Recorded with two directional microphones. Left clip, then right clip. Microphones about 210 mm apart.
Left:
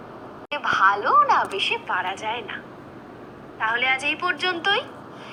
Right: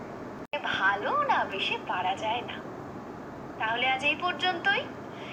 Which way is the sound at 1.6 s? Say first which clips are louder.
Left 6 dB; 15° left (ahead or behind).